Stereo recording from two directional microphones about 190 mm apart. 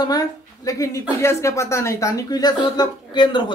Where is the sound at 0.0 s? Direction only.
20° left (ahead or behind).